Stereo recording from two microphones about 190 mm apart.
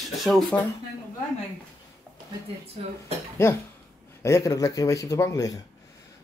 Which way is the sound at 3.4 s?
15° left (ahead or behind).